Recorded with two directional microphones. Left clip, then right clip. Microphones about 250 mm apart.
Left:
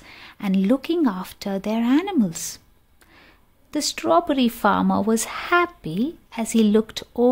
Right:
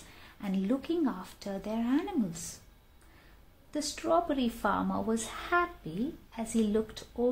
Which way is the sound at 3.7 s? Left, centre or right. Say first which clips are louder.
Left 10 dB; left.